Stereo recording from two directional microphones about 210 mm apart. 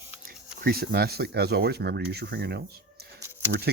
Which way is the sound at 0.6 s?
50° right (ahead or behind).